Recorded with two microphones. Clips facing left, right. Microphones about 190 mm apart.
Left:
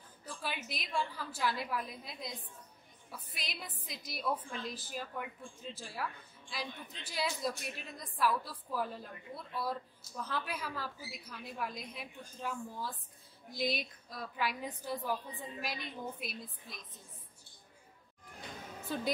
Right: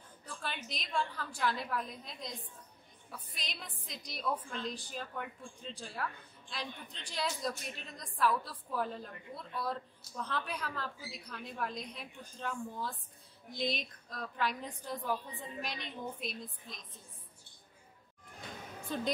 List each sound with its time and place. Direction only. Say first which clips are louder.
0.2 s a woman's voice: left 1 dB; 5° left (ahead or behind)
18.9 s a woman's voice: right 1 dB; 5° left (ahead or behind)